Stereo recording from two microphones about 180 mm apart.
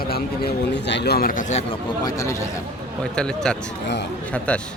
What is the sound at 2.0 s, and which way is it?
Speech, 20° left (ahead or behind).